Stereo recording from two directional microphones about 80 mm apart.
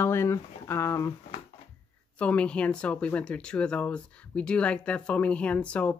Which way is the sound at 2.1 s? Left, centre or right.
Centre.